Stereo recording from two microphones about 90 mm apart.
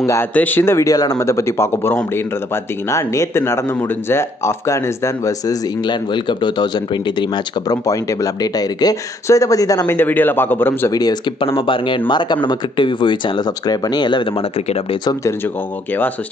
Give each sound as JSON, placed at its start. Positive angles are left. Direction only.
{"t": 0.0, "sound": "speech", "side_deg": 30}
{"t": 0.3, "sound": "a man's voice", "side_deg": 20}
{"t": 1.2, "sound": "a man's voice", "side_deg": 30}
{"t": 5.9, "sound": "speech", "side_deg": 60}
{"t": 7.7, "sound": "speech", "side_deg": 40}
{"t": 9.8, "sound": "a man's voice", "side_deg": 20}
{"t": 10.9, "sound": "speech", "side_deg": 45}
{"t": 11.4, "sound": "speech", "side_deg": 80}